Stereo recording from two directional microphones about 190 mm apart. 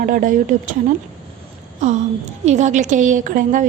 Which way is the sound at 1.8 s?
40° right (ahead or behind).